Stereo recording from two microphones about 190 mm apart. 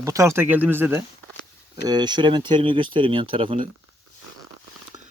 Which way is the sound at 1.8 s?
20° right (ahead or behind).